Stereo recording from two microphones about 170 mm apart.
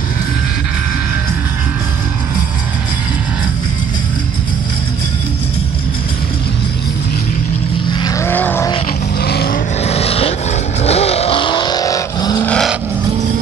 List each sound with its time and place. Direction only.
8.0 s vehicle: 20° left (ahead or behind)
9.2 s vehicle: 70° left (ahead or behind)
9.8 s vehicle: 35° left (ahead or behind)
12.4 s vehicle: 5° left (ahead or behind)